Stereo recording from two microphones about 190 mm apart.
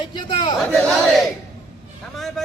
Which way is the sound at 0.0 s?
25° left (ahead or behind).